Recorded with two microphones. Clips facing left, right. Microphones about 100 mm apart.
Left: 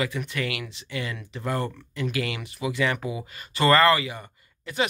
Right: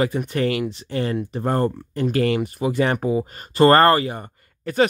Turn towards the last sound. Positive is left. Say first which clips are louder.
# right 8 dB
turn(degrees=-45)  # may be behind; listen again after turning